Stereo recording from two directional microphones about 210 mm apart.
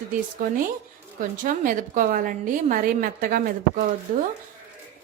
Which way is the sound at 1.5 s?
40° right (ahead or behind).